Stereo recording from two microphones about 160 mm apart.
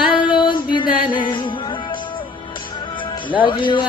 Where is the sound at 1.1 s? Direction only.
30° left (ahead or behind).